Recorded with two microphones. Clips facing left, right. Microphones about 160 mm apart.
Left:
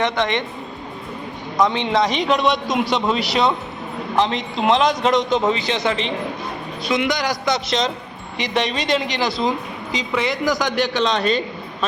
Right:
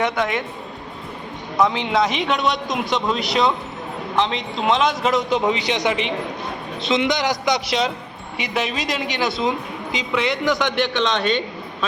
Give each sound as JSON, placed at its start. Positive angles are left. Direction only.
{"t": 0.0, "sound": "a woman's voice", "side_deg": -5}
{"t": 1.5, "sound": "a woman's voice", "side_deg": -5}